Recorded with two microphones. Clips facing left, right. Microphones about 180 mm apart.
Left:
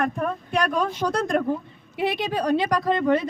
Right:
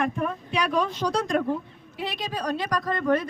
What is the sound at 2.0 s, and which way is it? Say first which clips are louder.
Speech: left 6 dB; 60° left (ahead or behind).